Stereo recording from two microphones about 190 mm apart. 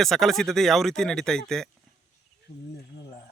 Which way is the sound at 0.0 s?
Centre (ahead or behind).